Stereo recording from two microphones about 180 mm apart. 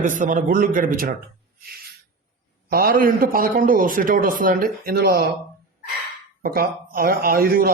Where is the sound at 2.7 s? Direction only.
55° right (ahead or behind).